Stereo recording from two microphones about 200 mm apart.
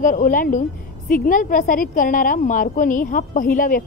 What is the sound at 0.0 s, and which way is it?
A woman's voice, 40° left (ahead or behind).